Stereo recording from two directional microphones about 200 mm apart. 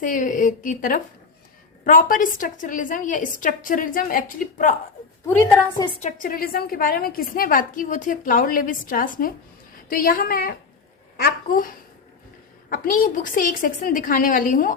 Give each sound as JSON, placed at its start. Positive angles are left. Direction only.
{"t": 0.0, "sound": "a woman's voice", "side_deg": 40}
{"t": 5.3, "sound": "a woman's voice", "side_deg": 10}
{"t": 6.0, "sound": "a woman's voice", "side_deg": 40}
{"t": 12.7, "sound": "a woman's voice", "side_deg": 45}